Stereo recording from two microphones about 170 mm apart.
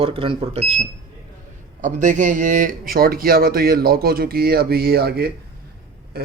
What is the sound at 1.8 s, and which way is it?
Speech, 45° right (ahead or behind).